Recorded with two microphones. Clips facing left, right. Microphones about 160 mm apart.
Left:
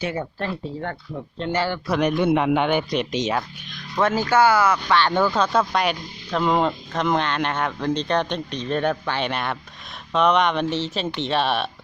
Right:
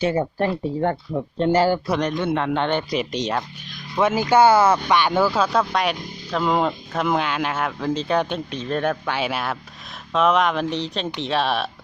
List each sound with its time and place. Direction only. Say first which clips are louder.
0.0 s speech: right 6 dB; 35° right (ahead or behind)
1.4 s speech: right 6 dB; 40° right (ahead or behind)
2.0 s a man's voice: left 3 dB; 10° left (ahead or behind)
2.9 s speech: left 1 dB; centre (ahead or behind)
3.9 s speech: right 2 dB; 10° right (ahead or behind)
4.9 s speech: right 1 dB; 10° right (ahead or behind)